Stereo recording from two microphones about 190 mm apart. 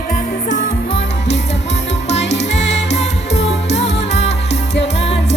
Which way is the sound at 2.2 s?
65° left (ahead or behind).